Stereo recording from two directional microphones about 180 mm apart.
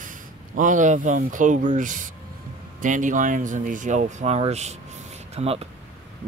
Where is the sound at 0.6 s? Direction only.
45° right (ahead or behind).